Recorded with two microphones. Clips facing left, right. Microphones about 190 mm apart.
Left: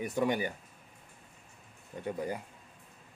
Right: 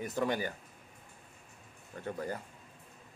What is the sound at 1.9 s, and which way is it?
Speech, 15° left (ahead or behind).